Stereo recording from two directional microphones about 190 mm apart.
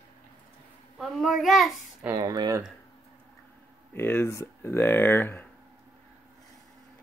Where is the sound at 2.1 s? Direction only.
20° right (ahead or behind).